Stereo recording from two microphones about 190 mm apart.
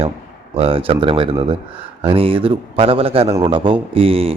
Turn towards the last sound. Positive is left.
turn(degrees=-30)  # may be behind; listen again after turning